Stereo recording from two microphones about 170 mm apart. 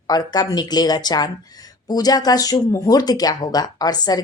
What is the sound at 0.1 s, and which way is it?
A woman's voice, 25° left (ahead or behind).